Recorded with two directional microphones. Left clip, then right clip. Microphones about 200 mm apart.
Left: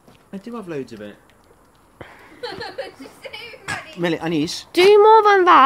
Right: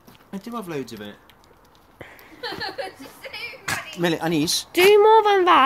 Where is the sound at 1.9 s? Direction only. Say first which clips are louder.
Left 2 dB; 15° left (ahead or behind).